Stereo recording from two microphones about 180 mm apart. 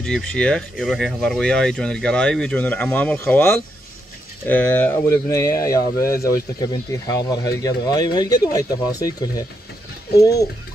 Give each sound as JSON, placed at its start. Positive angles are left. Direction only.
{"t": 0.0, "sound": "speech", "side_deg": 5}